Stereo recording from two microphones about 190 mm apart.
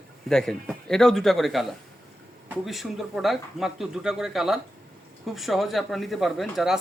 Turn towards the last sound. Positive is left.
turn(degrees=0)  # may be behind; listen again after turning